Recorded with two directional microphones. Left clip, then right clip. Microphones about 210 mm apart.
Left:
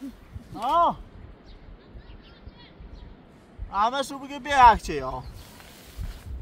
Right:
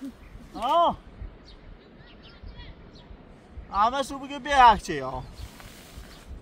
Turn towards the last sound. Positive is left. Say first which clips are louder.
# even
turn(degrees=15)  # may be behind; listen again after turning